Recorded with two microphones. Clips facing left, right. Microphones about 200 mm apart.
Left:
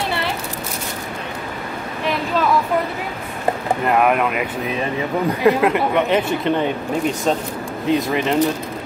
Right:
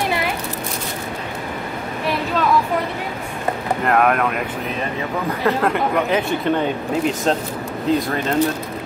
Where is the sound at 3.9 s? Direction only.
5° left (ahead or behind).